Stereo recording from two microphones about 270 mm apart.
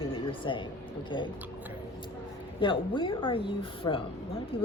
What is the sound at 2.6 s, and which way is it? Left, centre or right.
Speech, centre.